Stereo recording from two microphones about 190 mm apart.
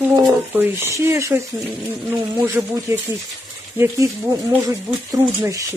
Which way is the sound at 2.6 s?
5° right (ahead or behind).